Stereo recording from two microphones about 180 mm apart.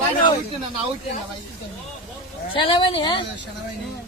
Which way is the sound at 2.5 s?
30° left (ahead or behind).